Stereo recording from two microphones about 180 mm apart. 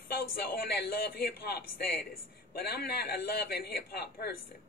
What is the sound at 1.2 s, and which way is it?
A man's voice, 60° left (ahead or behind).